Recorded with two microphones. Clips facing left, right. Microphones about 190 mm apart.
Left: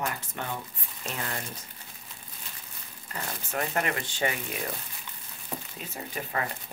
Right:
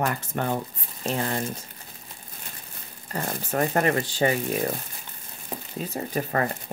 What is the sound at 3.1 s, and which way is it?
Speech, 40° right (ahead or behind).